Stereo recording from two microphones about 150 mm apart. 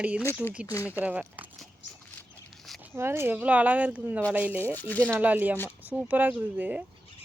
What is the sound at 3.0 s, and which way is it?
Speech, 15° right (ahead or behind).